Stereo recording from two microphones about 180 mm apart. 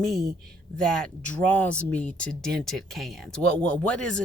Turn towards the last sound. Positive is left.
turn(degrees=5)  # may be behind; listen again after turning